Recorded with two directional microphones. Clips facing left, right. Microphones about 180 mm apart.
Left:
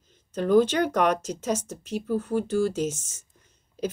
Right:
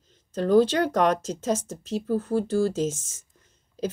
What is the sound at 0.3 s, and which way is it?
A woman's voice, 35° right (ahead or behind).